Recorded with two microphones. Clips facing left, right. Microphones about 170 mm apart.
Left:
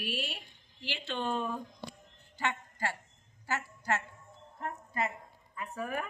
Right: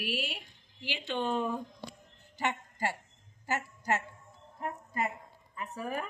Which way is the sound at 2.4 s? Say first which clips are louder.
Right 2 dB; 15° right (ahead or behind).